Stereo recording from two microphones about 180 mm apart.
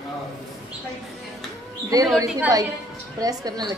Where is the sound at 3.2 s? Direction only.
20° right (ahead or behind).